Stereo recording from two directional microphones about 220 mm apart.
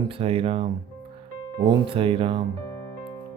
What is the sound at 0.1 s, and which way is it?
Speech, 25° right (ahead or behind).